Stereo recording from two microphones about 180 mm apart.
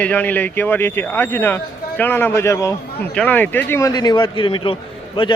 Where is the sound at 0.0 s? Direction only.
10° left (ahead or behind).